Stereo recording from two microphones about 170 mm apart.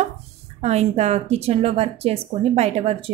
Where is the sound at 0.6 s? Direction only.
40° right (ahead or behind).